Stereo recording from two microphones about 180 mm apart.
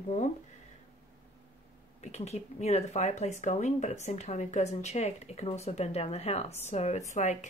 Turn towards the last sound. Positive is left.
turn(degrees=40)  # may be behind; listen again after turning